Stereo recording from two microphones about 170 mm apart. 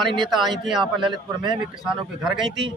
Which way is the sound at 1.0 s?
25° right (ahead or behind).